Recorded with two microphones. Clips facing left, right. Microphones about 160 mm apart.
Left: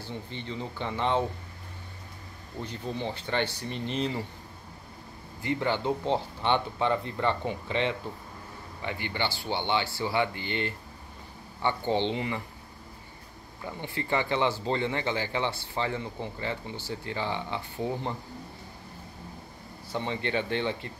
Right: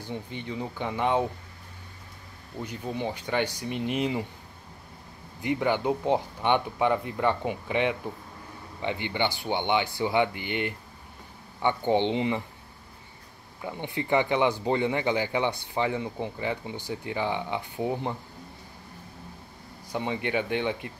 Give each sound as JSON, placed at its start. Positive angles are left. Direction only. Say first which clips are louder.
{"t": 0.0, "sound": "speech", "louder": "right 2 dB", "side_deg": -15}
{"t": 2.6, "sound": "speech", "louder": "right 2 dB", "side_deg": -10}
{"t": 5.4, "sound": "speech", "louder": "right 3 dB", "side_deg": -15}
{"t": 13.6, "sound": "speech", "louder": "right 3 dB", "side_deg": -15}
{"t": 19.9, "sound": "speech", "louder": "right 2 dB", "side_deg": -15}